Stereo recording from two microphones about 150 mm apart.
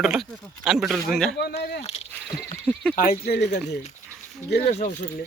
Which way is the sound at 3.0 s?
85° left.